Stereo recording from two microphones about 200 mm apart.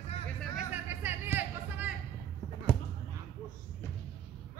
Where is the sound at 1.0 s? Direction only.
10° right (ahead or behind).